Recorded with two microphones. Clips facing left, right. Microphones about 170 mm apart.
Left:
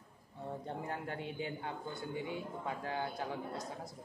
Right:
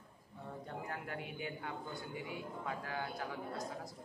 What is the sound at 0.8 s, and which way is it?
A man's voice, 30° left (ahead or behind).